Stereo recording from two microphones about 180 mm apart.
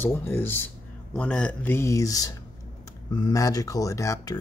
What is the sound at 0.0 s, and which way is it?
Speech, 10° left (ahead or behind).